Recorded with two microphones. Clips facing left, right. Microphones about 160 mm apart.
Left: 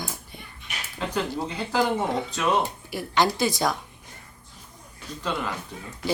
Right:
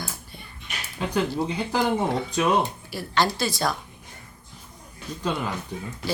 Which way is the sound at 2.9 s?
15° left (ahead or behind).